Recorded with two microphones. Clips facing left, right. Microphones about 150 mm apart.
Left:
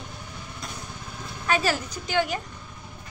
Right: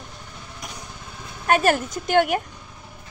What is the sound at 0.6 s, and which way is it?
Lawn mower, 15° right (ahead or behind).